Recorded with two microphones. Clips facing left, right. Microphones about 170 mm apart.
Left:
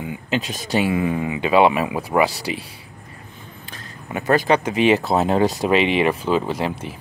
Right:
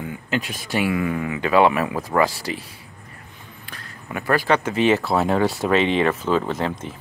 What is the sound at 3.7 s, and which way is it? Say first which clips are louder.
Speech: left 2 dB; 20° left (ahead or behind).